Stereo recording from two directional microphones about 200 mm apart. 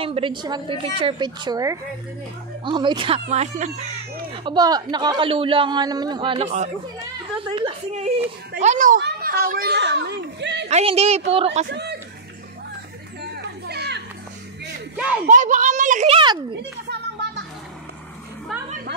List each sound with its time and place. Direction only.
0.0 s a child's voice: 25° right (ahead or behind)
9.0 s speech: 50° right (ahead or behind)
10.7 s a child's voice: 30° right (ahead or behind)
11.6 s speech: 55° right (ahead or behind)
13.2 s children playing: 55° right (ahead or behind)
15.2 s a child's voice: 40° right (ahead or behind)
16.5 s a sound: 55° right (ahead or behind)
18.5 s a sound: centre (ahead or behind)